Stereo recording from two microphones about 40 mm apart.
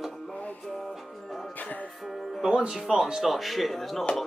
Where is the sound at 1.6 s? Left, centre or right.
Left.